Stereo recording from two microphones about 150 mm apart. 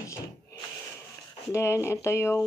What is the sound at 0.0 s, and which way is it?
Cupboard open or close, 20° left (ahead or behind).